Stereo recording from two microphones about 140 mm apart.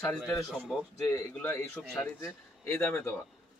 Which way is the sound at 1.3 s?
15° left (ahead or behind).